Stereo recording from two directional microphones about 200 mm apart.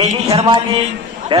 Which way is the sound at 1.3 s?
25° right (ahead or behind).